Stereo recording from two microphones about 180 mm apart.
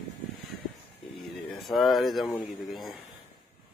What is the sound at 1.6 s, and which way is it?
Speech, centre (ahead or behind).